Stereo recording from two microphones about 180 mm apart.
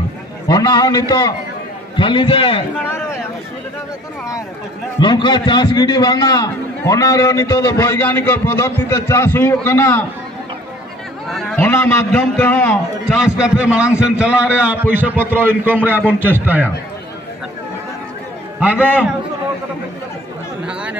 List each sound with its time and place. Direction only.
0.5 s a man's voice: 20° left (ahead or behind)
5.0 s a man's voice: 25° left (ahead or behind)
11.2 s a man's voice: centre (ahead or behind)
11.6 s a man's voice: 10° left (ahead or behind)
13.2 s a man's voice: 5° right (ahead or behind)
18.6 s a man's voice: 10° right (ahead or behind)